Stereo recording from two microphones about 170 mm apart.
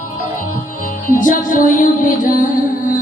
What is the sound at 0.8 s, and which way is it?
Music, 50° left (ahead or behind).